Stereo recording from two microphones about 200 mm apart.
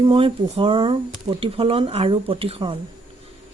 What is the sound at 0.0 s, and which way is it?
Speech, 25° right (ahead or behind).